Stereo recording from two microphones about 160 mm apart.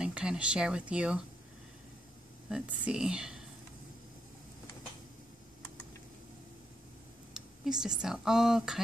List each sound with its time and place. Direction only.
0.0 s speech: 5° right (ahead or behind)
2.5 s speech: 5° right (ahead or behind)
7.3 s a sound: 5° right (ahead or behind)
8.0 s speech: 5° right (ahead or behind)